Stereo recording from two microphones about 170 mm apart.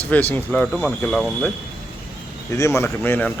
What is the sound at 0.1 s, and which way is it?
Speech, 10° left (ahead or behind).